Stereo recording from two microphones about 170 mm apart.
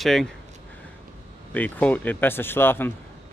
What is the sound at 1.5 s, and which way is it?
Speech, 10° left (ahead or behind).